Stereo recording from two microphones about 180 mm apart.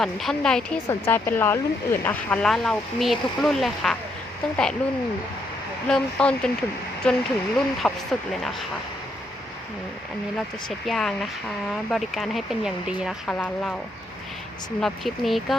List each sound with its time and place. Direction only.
0.0 s speech: centre (ahead or behind)
5.9 s speech: 5° left (ahead or behind)
10.8 s speech: centre (ahead or behind)
13.3 s speech: 5° left (ahead or behind)
14.8 s speech: centre (ahead or behind)